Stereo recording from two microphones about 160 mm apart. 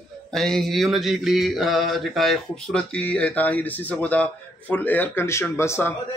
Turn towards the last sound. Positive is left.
turn(degrees=15)  # may be behind; listen again after turning